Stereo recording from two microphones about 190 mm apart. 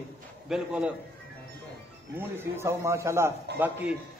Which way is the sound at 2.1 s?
10° right (ahead or behind).